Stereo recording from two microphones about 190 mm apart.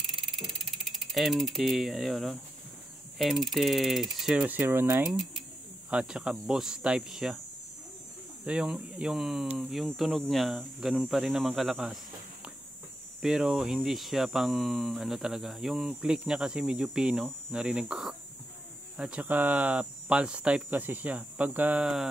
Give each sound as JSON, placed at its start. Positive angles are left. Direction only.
{"t": 0.4, "sound": "speech", "side_deg": 0}
{"t": 3.2, "sound": "hum", "side_deg": 0}
{"t": 8.5, "sound": "hum", "side_deg": -5}
{"t": 13.2, "sound": "hum", "side_deg": -5}
{"t": 18.9, "sound": "speech", "side_deg": -5}